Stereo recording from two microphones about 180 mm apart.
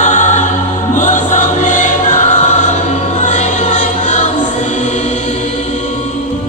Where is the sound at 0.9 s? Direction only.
45° left (ahead or behind).